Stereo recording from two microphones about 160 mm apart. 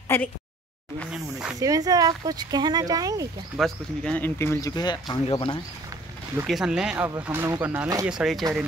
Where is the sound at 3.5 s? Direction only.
5° left (ahead or behind); by 5.6 s 30° left (ahead or behind).